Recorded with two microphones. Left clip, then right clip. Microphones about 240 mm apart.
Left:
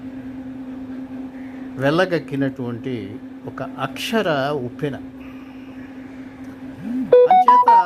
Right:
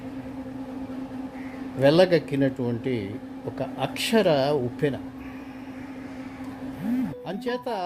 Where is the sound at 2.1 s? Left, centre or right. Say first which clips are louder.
Even; centre.